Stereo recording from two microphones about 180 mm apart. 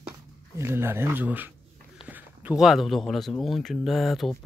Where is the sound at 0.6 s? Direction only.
15° right (ahead or behind).